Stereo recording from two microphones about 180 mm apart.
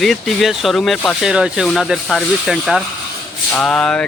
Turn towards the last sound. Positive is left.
turn(degrees=5)  # may be behind; listen again after turning